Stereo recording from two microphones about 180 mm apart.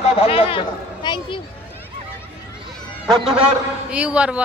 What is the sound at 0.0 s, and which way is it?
Speech, 35° left (ahead or behind).